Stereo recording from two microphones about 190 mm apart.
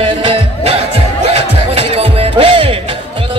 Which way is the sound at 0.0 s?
30° right (ahead or behind).